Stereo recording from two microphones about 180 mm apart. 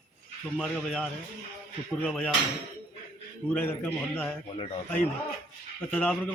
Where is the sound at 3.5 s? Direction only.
10° left (ahead or behind).